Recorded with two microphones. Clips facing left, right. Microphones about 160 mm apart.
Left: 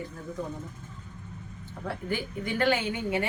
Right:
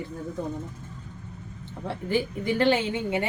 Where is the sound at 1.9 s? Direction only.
25° right (ahead or behind).